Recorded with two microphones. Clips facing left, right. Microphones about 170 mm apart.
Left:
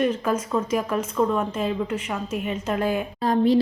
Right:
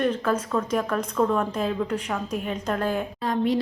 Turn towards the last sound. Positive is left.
turn(degrees=35)  # may be behind; listen again after turning